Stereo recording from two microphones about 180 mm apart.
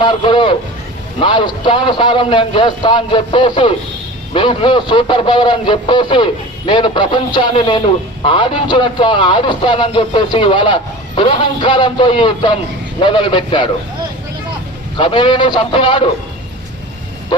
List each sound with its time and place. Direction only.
0.0 s a man's voice: 25° left (ahead or behind)
14.9 s a man's voice: 30° left (ahead or behind)